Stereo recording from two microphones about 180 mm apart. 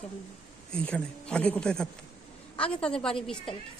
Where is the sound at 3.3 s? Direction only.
30° left (ahead or behind).